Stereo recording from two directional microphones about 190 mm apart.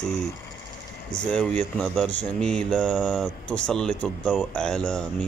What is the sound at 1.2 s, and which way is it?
Speech, 5° left (ahead or behind).